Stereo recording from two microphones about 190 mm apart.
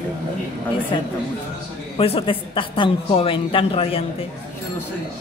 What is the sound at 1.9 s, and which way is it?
A woman's voice, 30° left (ahead or behind).